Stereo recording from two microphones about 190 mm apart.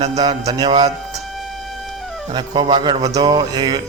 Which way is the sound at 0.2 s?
20° right (ahead or behind).